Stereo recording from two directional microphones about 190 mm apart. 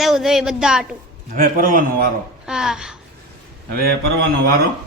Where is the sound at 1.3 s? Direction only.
45° right (ahead or behind).